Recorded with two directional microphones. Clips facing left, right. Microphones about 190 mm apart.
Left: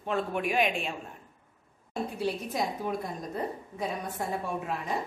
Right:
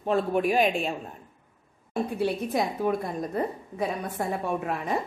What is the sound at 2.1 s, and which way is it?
A woman's voice, 60° right (ahead or behind).